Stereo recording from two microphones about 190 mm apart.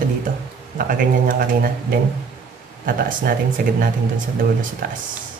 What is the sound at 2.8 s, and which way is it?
Speech, 45° right (ahead or behind).